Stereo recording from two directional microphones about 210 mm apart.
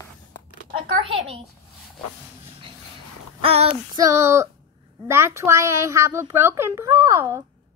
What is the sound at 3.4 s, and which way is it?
Speech, 25° right (ahead or behind).